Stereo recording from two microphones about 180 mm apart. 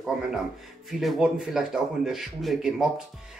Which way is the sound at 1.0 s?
Centre (ahead or behind).